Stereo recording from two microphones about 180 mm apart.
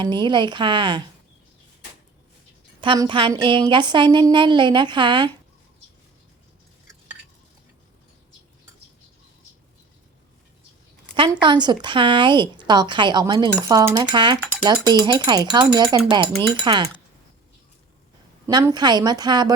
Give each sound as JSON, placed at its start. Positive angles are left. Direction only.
{"t": 0.0, "sound": "speech", "side_deg": -25}
{"t": 2.8, "sound": "speech", "side_deg": -25}
{"t": 11.3, "sound": "speech", "side_deg": -25}
{"t": 18.4, "sound": "speech", "side_deg": -20}